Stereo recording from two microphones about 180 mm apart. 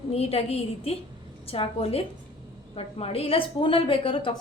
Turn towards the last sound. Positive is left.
turn(degrees=30)  # may be behind; listen again after turning